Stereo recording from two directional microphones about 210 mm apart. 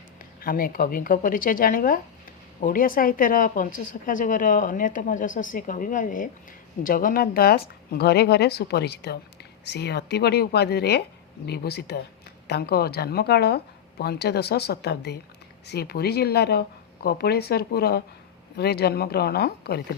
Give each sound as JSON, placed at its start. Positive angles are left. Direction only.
{"t": 0.4, "sound": "a woman's voice", "side_deg": 45}